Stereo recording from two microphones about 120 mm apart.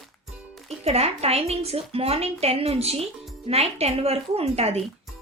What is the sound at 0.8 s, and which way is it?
A woman's voice, 60° right (ahead or behind).